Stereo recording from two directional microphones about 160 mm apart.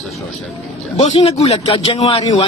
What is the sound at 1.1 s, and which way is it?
A man's voice, 35° left (ahead or behind).